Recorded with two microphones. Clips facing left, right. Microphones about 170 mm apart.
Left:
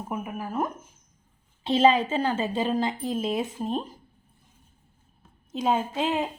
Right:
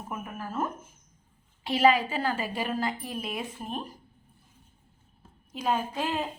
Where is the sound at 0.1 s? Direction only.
15° left (ahead or behind).